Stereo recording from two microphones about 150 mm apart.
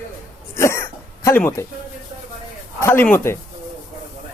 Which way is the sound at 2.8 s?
15° left (ahead or behind).